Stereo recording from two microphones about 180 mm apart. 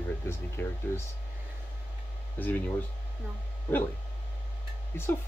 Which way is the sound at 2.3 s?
10° left (ahead or behind).